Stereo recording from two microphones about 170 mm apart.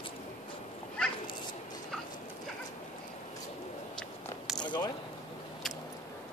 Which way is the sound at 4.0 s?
Centre (ahead or behind).